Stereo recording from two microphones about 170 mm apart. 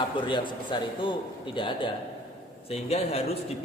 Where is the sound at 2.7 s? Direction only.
35° left (ahead or behind).